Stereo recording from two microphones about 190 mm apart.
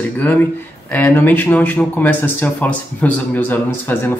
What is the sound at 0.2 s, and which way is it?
Speech, 10° left (ahead or behind).